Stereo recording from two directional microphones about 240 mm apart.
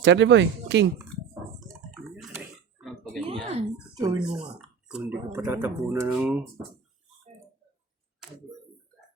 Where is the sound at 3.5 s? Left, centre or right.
Right.